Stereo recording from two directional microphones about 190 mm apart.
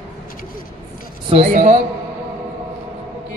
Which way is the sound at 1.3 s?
40° right (ahead or behind).